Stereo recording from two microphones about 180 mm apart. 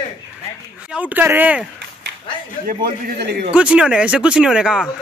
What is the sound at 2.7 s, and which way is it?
Speech, 60° right (ahead or behind).